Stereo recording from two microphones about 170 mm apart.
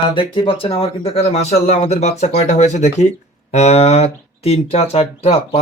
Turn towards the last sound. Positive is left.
turn(degrees=35)  # may be behind; listen again after turning